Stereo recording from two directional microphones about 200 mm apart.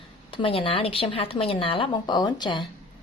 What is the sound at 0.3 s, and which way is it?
Speech, 25° left (ahead or behind).